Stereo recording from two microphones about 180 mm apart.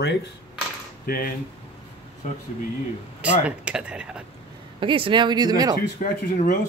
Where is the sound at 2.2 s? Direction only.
45° left (ahead or behind).